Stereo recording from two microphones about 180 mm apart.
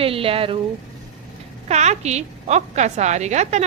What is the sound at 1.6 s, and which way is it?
A woman's voice, 40° right (ahead or behind).